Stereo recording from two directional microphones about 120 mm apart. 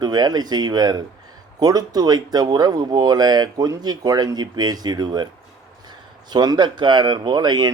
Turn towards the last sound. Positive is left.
turn(degrees=-35)  # may be behind; listen again after turning